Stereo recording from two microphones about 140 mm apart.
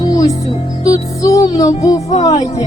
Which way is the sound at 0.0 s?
25° left (ahead or behind).